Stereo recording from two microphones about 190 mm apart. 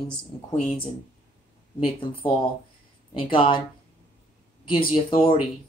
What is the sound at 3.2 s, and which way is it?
Speech, 25° left (ahead or behind).